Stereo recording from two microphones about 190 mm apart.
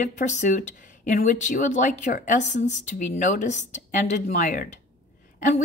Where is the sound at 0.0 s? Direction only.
40° left (ahead or behind).